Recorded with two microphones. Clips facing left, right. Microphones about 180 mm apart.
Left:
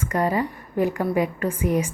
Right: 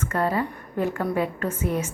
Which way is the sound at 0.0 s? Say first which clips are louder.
Left 2 dB; 15° left (ahead or behind).